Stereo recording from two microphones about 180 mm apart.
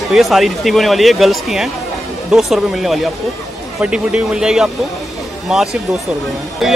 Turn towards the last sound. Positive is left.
turn(degrees=0)  # may be behind; listen again after turning